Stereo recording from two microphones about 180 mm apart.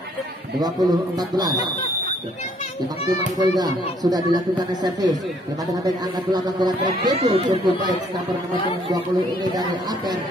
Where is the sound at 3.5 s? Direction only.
20° right (ahead or behind).